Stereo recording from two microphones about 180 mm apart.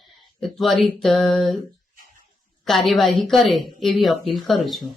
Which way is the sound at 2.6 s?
Centre (ahead or behind).